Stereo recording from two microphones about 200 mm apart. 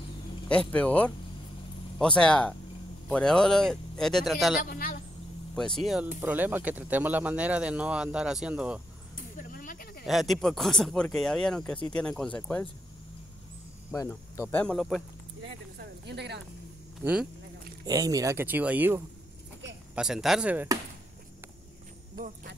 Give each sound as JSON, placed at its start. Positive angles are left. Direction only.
{"t": 0.5, "sound": "speech", "side_deg": 5}
{"t": 4.6, "sound": "a woman's voice", "side_deg": 45}
{"t": 5.6, "sound": "speech", "side_deg": 0}
{"t": 9.1, "sound": "a sound", "side_deg": 40}
{"t": 10.0, "sound": "speech", "side_deg": 0}
{"t": 13.9, "sound": "speech", "side_deg": 15}
{"t": 15.8, "sound": "a sound", "side_deg": -55}
{"t": 17.0, "sound": "speech", "side_deg": -5}
{"t": 17.8, "sound": "speech", "side_deg": -20}
{"t": 22.2, "sound": "speech", "side_deg": -45}